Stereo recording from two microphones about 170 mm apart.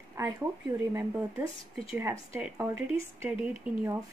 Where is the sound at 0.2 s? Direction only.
20° right (ahead or behind).